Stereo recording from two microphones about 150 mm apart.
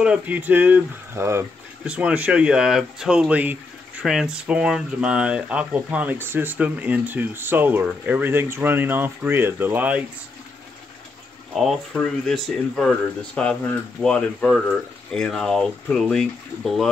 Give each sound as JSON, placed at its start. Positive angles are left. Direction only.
{"t": 0.0, "sound": "speech", "side_deg": -10}
{"t": 11.5, "sound": "speech", "side_deg": 0}